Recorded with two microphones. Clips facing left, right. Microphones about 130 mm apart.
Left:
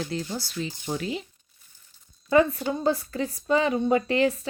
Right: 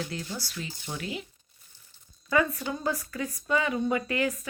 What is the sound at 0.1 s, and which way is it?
A woman's voice, 25° left (ahead or behind).